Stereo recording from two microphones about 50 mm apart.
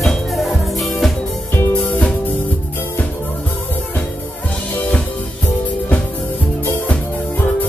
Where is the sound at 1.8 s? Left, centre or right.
Left.